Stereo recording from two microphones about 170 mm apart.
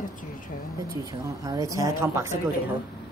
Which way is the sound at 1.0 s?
20° right (ahead or behind).